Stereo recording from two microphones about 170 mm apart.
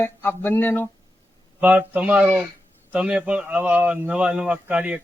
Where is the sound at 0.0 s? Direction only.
10° left (ahead or behind).